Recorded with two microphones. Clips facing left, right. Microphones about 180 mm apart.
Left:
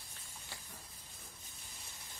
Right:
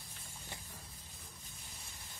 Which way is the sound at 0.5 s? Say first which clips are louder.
Right 2 dB; 20° right (ahead or behind).